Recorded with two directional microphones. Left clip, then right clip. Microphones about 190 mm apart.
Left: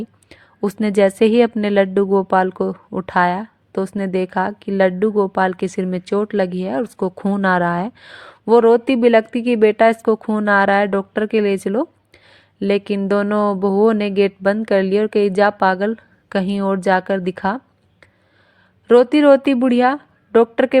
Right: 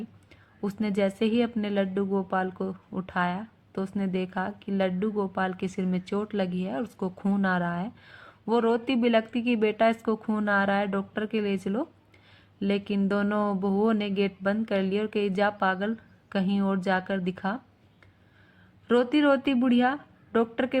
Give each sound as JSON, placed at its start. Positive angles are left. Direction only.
{"t": 0.3, "sound": "a woman's voice", "side_deg": 45}
{"t": 18.9, "sound": "a woman's voice", "side_deg": 45}